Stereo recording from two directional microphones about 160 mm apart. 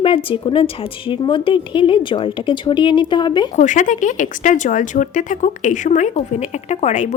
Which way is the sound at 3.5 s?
50° left (ahead or behind).